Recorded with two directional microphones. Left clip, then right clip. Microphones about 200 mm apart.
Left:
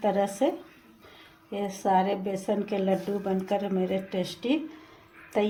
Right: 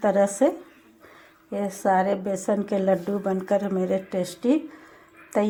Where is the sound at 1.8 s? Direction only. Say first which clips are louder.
Right 3 dB; 25° right (ahead or behind).